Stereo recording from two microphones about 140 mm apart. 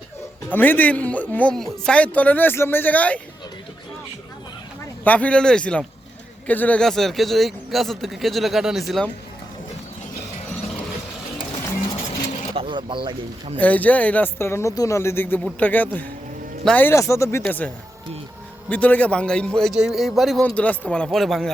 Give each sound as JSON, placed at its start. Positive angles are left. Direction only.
{"t": 0.5, "sound": "speech", "side_deg": 15}
{"t": 5.0, "sound": "speech", "side_deg": 10}
{"t": 12.5, "sound": "a sound", "side_deg": -35}
{"t": 13.6, "sound": "speech", "side_deg": 10}
{"t": 18.7, "sound": "speech", "side_deg": 10}
{"t": 20.4, "sound": "speech", "side_deg": 10}